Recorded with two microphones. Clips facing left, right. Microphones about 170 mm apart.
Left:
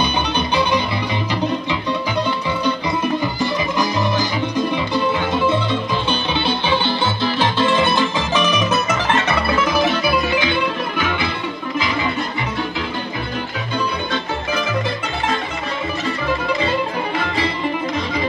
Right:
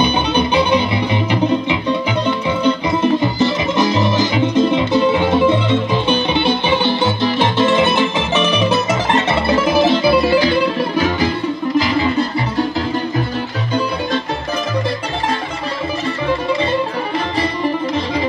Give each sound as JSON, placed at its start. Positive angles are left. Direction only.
{"t": 0.0, "sound": "music", "side_deg": -15}